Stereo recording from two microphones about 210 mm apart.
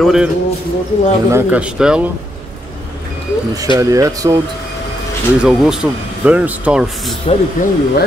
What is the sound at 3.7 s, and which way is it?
Speech, 15° right (ahead or behind).